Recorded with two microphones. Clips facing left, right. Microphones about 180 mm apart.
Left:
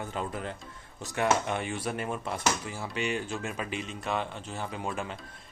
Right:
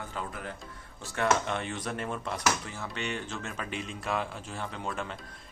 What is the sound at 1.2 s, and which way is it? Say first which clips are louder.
Speech: left 1 dB; 10° left (ahead or behind).